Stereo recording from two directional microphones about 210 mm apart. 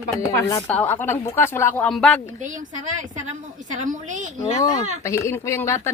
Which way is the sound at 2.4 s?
35° right (ahead or behind).